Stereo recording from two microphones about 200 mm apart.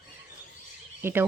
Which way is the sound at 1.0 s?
10° right (ahead or behind).